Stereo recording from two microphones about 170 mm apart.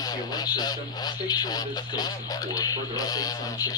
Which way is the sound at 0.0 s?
25° left (ahead or behind).